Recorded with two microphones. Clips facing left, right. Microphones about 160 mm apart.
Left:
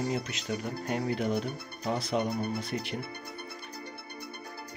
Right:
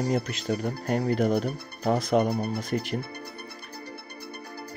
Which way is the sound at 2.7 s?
45° right (ahead or behind).